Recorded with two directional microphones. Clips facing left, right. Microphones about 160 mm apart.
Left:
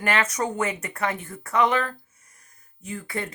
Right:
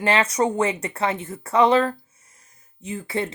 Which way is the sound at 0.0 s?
30° right (ahead or behind).